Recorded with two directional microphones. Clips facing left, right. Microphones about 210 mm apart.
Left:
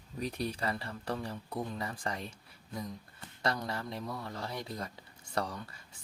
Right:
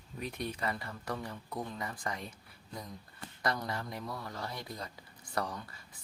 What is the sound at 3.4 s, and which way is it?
Speech, 30° left (ahead or behind).